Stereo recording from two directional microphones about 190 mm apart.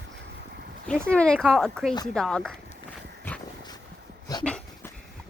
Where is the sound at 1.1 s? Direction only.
5° left (ahead or behind).